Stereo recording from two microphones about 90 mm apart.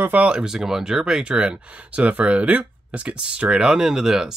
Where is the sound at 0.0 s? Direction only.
15° right (ahead or behind).